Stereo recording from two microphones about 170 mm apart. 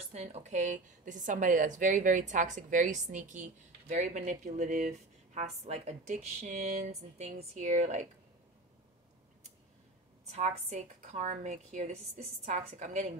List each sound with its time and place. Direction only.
0.1 s a woman's voice: 40° right (ahead or behind)
10.2 s a woman's voice: 40° right (ahead or behind)